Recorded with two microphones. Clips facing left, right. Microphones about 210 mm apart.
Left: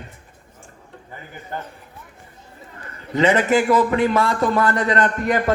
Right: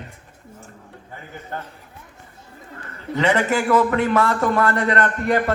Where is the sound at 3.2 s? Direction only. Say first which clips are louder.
Left 3 dB; 20° left (ahead or behind).